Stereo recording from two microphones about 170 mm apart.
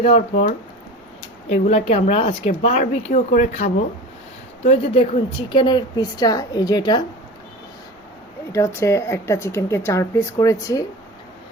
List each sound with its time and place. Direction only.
0.0 s speech: 40° left (ahead or behind)
1.6 s a woman's voice: 40° left (ahead or behind)
8.5 s speech: 15° left (ahead or behind)